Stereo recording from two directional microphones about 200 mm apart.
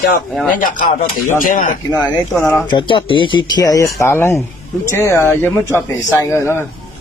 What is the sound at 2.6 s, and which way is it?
Speech, 25° left (ahead or behind).